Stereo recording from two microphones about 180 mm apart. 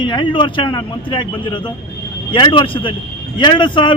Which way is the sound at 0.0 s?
25° left (ahead or behind).